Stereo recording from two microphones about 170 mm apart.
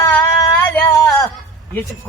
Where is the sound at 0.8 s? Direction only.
20° left (ahead or behind).